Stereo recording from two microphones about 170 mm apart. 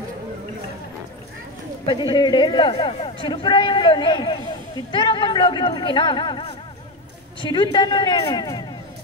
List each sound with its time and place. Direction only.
1.9 s a man's voice: 25° left (ahead or behind)